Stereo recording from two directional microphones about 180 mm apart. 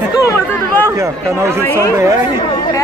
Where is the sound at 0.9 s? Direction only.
15° right (ahead or behind).